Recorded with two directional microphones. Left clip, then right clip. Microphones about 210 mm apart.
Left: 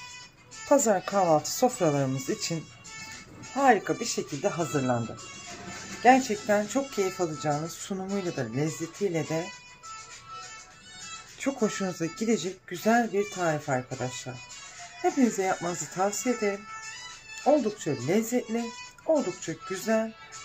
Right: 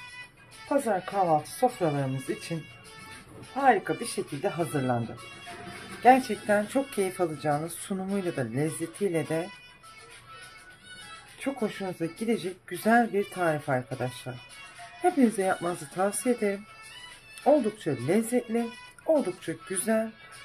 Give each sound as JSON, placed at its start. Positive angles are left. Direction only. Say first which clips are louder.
{"t": 0.7, "sound": "speech", "louder": "left 4 dB", "side_deg": 25}
{"t": 3.9, "sound": "speech", "louder": "left 1 dB", "side_deg": 10}
{"t": 6.0, "sound": "speech", "louder": "even", "side_deg": 0}
{"t": 11.4, "sound": "speech", "louder": "left 3 dB", "side_deg": 15}